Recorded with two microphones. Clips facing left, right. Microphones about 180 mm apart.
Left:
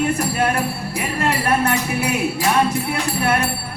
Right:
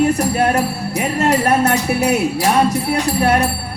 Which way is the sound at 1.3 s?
40° right (ahead or behind).